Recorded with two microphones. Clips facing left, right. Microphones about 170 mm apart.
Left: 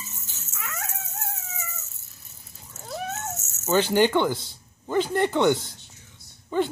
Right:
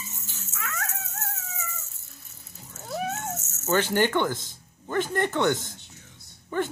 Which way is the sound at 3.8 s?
20° left (ahead or behind).